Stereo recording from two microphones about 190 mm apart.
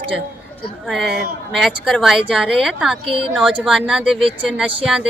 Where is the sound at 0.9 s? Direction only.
Centre (ahead or behind).